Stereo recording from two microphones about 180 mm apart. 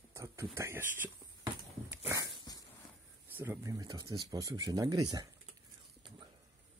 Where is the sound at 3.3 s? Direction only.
10° right (ahead or behind).